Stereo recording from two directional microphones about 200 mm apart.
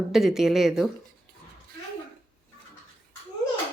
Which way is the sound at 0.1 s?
Centre (ahead or behind).